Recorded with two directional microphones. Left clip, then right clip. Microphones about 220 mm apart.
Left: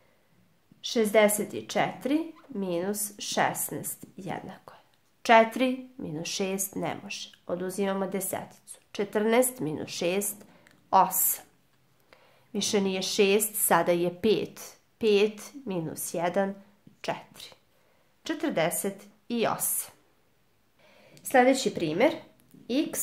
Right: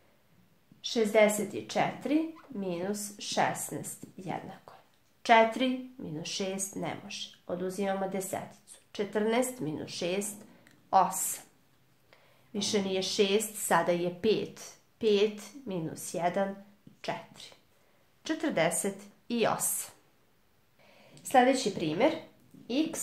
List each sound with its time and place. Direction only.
0.7 s a woman's voice: 40° left (ahead or behind)
17.0 s a sound: 35° left (ahead or behind)
18.2 s a woman's voice: 30° left (ahead or behind)
21.2 s a woman's voice: 35° left (ahead or behind)